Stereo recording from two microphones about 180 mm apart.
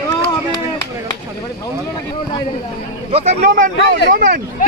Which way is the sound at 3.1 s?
40° right (ahead or behind).